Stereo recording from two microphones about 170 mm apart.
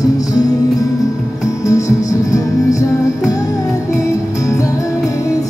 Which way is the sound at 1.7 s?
20° left (ahead or behind).